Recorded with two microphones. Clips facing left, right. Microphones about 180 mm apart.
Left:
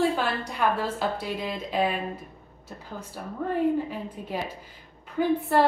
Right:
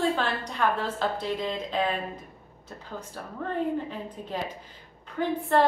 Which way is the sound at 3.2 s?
10° left (ahead or behind).